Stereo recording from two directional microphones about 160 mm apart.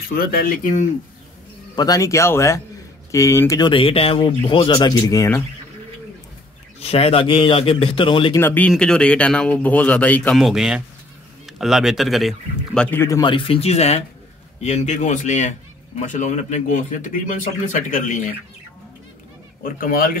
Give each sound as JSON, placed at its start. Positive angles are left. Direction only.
{"t": 0.1, "sound": "speech", "side_deg": 65}
{"t": 1.8, "sound": "speech", "side_deg": 20}
{"t": 6.8, "sound": "a man's voice", "side_deg": 40}
{"t": 8.4, "sound": "speech", "side_deg": 10}
{"t": 13.2, "sound": "a man's voice", "side_deg": 30}
{"t": 19.6, "sound": "speech", "side_deg": 60}